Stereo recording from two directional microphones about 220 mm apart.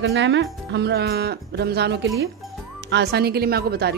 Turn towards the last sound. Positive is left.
turn(degrees=-45)  # may be behind; listen again after turning